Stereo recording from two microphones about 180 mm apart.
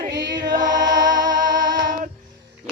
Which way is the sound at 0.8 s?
90° right.